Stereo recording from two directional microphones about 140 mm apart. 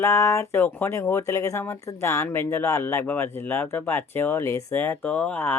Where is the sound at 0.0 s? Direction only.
20° left (ahead or behind).